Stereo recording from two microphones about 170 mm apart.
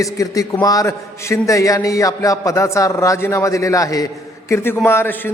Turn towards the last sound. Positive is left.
turn(degrees=15)  # may be behind; listen again after turning